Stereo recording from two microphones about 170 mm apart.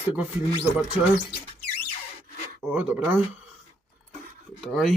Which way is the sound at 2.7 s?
10° right (ahead or behind).